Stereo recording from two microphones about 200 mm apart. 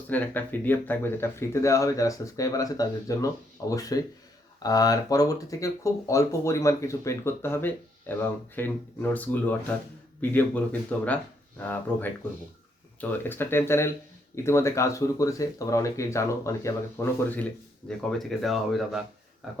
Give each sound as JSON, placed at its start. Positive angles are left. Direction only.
{"t": 0.1, "sound": "speech", "side_deg": 10}